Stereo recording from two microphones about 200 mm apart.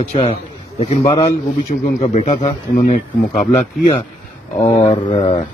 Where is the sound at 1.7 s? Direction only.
35° left (ahead or behind).